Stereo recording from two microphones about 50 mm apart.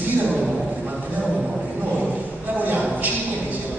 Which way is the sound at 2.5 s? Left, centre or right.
Right.